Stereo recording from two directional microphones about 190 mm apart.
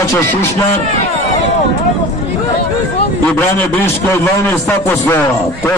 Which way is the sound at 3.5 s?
10° left (ahead or behind).